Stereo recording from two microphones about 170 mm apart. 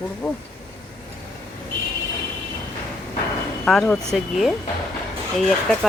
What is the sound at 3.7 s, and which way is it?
Speech, centre (ahead or behind).